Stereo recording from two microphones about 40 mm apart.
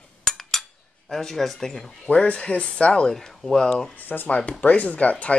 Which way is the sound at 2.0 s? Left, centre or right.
Left.